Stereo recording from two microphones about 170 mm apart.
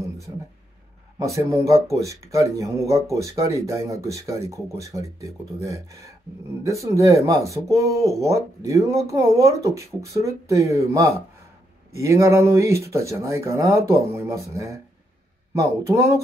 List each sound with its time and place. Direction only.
1.2 s speech: 20° right (ahead or behind)